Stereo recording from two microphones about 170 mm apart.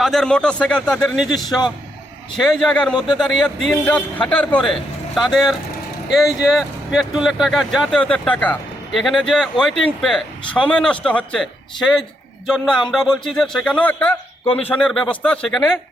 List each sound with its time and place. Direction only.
0.0 s speech: 5° left (ahead or behind)
1.5 s a man's voice: 25° left (ahead or behind)
2.3 s a man's voice: centre (ahead or behind)